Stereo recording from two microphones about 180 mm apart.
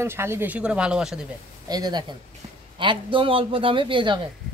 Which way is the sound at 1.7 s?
25° right (ahead or behind).